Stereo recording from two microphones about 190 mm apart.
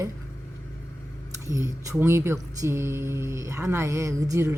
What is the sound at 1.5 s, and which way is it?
Speech, 15° right (ahead or behind).